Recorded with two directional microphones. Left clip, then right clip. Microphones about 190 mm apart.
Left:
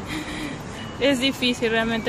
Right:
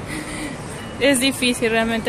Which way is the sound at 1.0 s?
Centre (ahead or behind).